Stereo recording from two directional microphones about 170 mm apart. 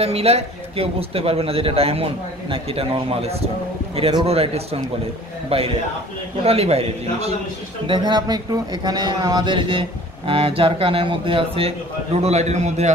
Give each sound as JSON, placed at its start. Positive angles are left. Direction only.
{"t": 0.0, "sound": "speech", "side_deg": -35}